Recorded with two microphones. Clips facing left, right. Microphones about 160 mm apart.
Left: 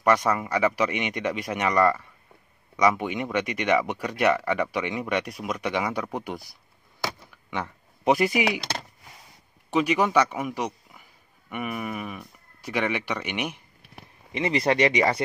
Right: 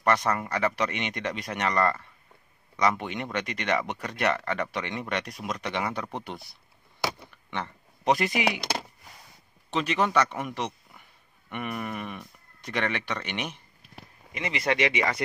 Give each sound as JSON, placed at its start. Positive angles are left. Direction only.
{"t": 0.0, "sound": "speech", "side_deg": 10}
{"t": 7.5, "sound": "a man's voice", "side_deg": 10}
{"t": 9.7, "sound": "a man's voice", "side_deg": 10}
{"t": 14.3, "sound": "speech", "side_deg": 35}